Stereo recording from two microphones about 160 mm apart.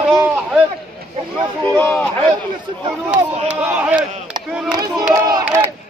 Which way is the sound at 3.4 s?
10° right (ahead or behind).